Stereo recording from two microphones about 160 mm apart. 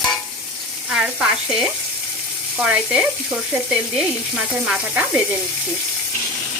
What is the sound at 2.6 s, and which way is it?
Frying, 5° right (ahead or behind).